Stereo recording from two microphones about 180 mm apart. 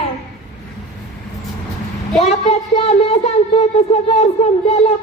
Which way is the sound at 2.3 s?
35° left (ahead or behind).